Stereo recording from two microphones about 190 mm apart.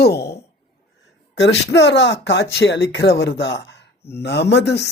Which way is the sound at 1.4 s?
65° left (ahead or behind).